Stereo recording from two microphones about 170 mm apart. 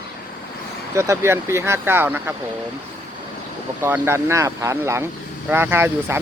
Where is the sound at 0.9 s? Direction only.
15° right (ahead or behind).